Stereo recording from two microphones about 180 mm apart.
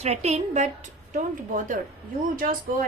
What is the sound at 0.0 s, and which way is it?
A woman's voice, 35° right (ahead or behind).